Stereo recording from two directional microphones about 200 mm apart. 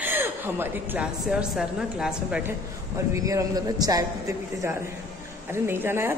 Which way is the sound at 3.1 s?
15° right (ahead or behind).